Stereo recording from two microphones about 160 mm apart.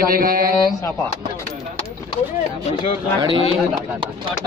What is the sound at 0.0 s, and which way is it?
Speech, 60° right (ahead or behind).